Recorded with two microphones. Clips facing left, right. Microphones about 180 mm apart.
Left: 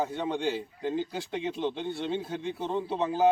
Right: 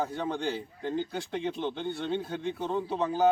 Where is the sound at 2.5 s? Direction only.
25° left (ahead or behind).